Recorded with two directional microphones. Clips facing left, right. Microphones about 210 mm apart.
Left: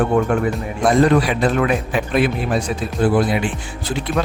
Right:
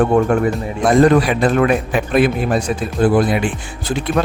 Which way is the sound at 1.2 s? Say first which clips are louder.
Right 3 dB; 50° right (ahead or behind).